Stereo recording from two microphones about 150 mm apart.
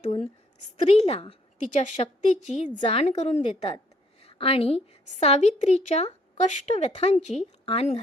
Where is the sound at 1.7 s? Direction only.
55° left (ahead or behind).